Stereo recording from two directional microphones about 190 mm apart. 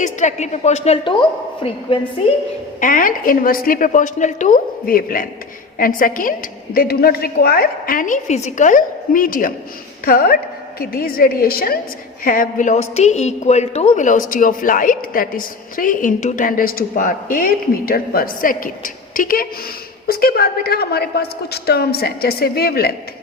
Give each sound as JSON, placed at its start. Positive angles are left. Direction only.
{"t": 0.0, "sound": "a woman's voice", "side_deg": 40}
{"t": 2.8, "sound": "a woman's voice", "side_deg": 45}